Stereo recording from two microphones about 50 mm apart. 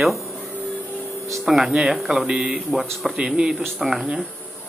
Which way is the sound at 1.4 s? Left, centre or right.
Centre.